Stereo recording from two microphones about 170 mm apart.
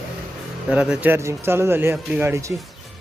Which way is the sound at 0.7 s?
5° right (ahead or behind).